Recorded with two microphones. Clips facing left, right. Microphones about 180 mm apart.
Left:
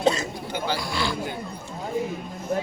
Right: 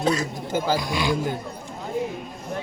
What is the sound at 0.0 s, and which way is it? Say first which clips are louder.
Speech: even; 25° left (ahead or behind).